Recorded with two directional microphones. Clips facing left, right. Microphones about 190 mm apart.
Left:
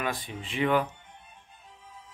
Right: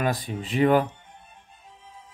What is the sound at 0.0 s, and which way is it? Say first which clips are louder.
Speech: right 6 dB; 40° right (ahead or behind).